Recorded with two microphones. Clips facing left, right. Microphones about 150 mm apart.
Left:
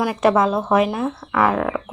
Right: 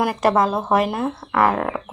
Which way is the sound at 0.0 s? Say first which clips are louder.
Left 1 dB; centre (ahead or behind).